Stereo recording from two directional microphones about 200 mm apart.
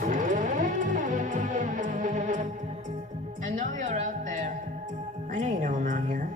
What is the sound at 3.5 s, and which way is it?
Speech, 40° right (ahead or behind).